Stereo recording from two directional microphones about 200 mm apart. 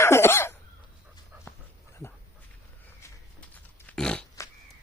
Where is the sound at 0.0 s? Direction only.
10° left (ahead or behind).